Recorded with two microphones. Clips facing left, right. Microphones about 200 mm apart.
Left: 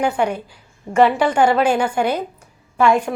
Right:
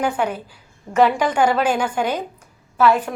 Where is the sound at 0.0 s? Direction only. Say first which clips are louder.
Left 2 dB; 10° left (ahead or behind).